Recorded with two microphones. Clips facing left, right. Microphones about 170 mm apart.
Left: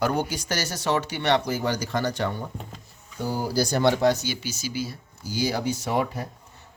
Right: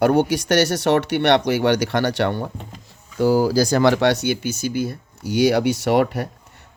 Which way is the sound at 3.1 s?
90° right.